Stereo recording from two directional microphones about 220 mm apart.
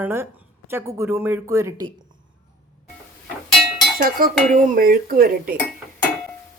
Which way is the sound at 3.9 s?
40° right (ahead or behind).